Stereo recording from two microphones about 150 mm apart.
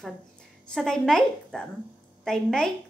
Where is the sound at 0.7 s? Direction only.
5° left (ahead or behind).